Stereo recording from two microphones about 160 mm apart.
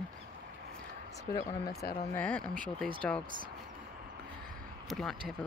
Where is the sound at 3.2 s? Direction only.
60° right (ahead or behind).